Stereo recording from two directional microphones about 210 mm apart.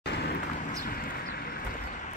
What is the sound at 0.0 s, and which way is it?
Vehicle, 50° left (ahead or behind).